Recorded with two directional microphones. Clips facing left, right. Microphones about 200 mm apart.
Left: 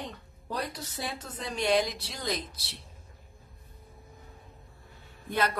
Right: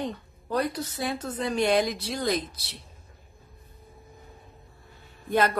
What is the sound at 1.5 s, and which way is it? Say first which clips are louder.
Speech: right 3 dB; 55° right (ahead or behind).